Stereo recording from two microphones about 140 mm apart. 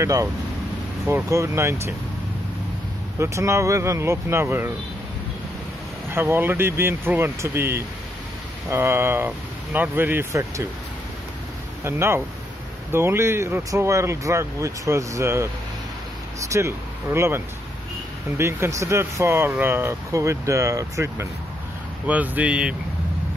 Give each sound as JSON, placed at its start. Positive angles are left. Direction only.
{"t": 0.0, "sound": "speech", "side_deg": -20}
{"t": 3.2, "sound": "speech", "side_deg": -20}
{"t": 6.1, "sound": "speech", "side_deg": -15}
{"t": 11.8, "sound": "speech", "side_deg": -15}
{"t": 18.4, "sound": "speech", "side_deg": -20}